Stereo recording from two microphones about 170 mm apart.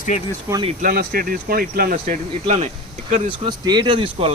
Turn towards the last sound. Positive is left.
turn(degrees=-30)  # may be behind; listen again after turning